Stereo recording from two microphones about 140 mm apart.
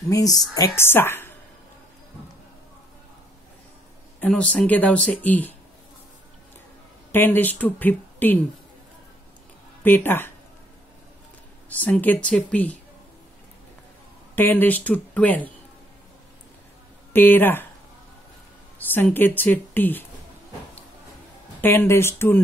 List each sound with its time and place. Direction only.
0.1 s speech: 25° left (ahead or behind)
4.2 s speech: 10° left (ahead or behind)
7.1 s speech: 15° left (ahead or behind)
9.8 s speech: 15° left (ahead or behind)
11.7 s speech: 10° left (ahead or behind)
14.3 s speech: 15° left (ahead or behind)
17.1 s speech: 15° left (ahead or behind)
18.9 s speech: 15° left (ahead or behind)
21.5 s speech: 15° left (ahead or behind)